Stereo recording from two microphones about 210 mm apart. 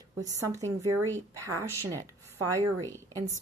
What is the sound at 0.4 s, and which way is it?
Speech, 15° right (ahead or behind).